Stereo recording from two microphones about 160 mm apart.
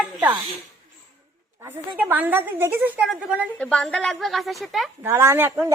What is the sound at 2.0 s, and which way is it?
A woman's voice, 10° right (ahead or behind).